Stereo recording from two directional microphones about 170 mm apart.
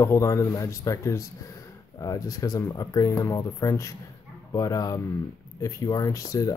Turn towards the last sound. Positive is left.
turn(degrees=20)  # may be behind; listen again after turning